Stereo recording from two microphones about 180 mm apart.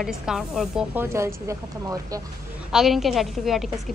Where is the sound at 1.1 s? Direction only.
15° right (ahead or behind).